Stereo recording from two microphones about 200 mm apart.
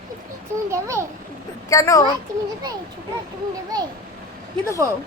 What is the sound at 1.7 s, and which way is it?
Speech, 15° left (ahead or behind).